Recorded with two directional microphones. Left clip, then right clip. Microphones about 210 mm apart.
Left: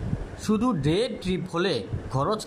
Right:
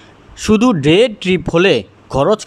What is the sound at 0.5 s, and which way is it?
Speech, 40° right (ahead or behind).